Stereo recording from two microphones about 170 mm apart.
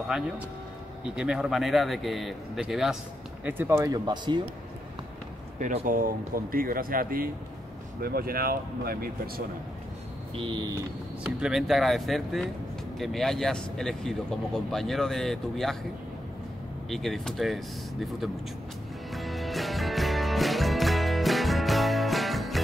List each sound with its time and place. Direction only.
1.0 s speech: 5° right (ahead or behind)
3.4 s speech: 15° right (ahead or behind)
5.6 s speech: 50° right (ahead or behind)
10.3 s speech: 30° right (ahead or behind)
11.2 s speech: 5° right (ahead or behind)
16.9 s speech: centre (ahead or behind)
19.1 s music: centre (ahead or behind)